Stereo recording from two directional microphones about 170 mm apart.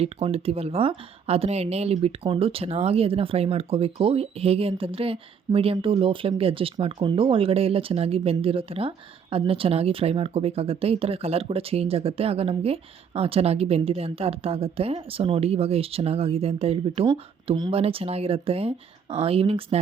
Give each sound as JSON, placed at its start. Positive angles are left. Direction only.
{"t": 0.0, "sound": "speech", "side_deg": -35}